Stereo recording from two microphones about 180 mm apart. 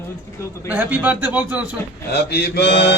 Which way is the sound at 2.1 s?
65° left (ahead or behind).